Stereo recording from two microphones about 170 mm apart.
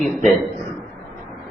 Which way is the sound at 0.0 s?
Centre (ahead or behind).